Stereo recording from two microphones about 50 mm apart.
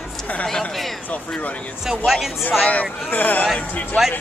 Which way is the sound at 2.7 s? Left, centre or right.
Left.